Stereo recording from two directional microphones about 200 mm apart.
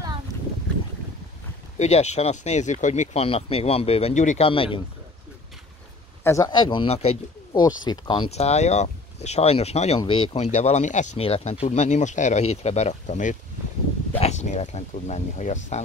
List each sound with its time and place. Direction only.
1.8 s speech: 35° left (ahead or behind)
6.2 s speech: 15° left (ahead or behind); by 15.8 s 35° left (ahead or behind)